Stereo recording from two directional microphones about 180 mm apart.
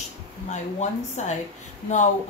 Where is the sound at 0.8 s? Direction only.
40° left (ahead or behind).